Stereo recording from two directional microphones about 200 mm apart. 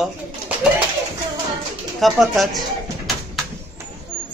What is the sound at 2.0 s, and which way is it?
Speech, centre (ahead or behind).